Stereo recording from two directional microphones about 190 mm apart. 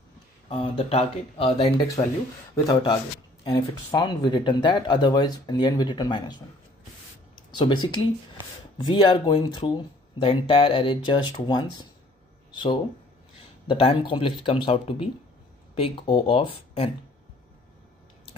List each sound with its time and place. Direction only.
0.5 s speech: 30° left (ahead or behind)
2.5 s speech: 20° left (ahead or behind)
7.5 s speech: 25° left (ahead or behind)